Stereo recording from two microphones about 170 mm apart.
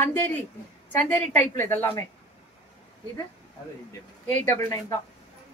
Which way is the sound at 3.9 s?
15° left (ahead or behind).